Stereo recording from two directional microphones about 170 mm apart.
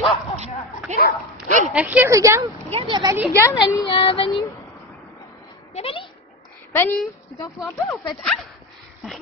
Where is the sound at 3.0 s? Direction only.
15° right (ahead or behind).